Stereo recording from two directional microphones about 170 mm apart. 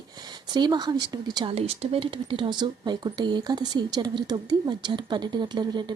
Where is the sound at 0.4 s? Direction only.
25° right (ahead or behind).